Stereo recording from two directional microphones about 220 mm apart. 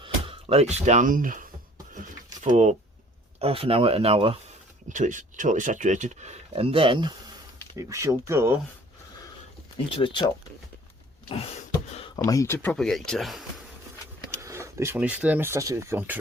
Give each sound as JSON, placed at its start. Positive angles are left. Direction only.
{"t": 0.0, "sound": "speech", "side_deg": -25}
{"t": 2.5, "sound": "speech", "side_deg": -30}
{"t": 10.0, "sound": "speech", "side_deg": 20}
{"t": 11.9, "sound": "a sound", "side_deg": 25}
{"t": 12.2, "sound": "speech", "side_deg": 15}
{"t": 14.4, "sound": "speech", "side_deg": -15}